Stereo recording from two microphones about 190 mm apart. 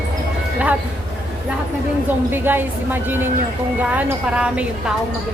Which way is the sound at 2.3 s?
10° right (ahead or behind).